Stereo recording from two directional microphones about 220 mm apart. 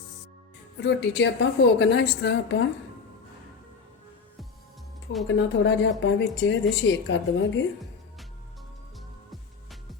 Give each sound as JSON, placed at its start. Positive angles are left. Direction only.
{"t": 0.8, "sound": "a woman's voice", "side_deg": 55}
{"t": 5.3, "sound": "a woman's voice", "side_deg": 55}